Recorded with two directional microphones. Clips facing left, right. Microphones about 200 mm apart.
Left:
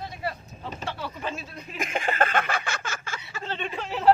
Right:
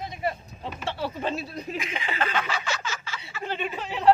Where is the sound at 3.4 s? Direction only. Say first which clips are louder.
Right 2 dB; 10° right (ahead or behind).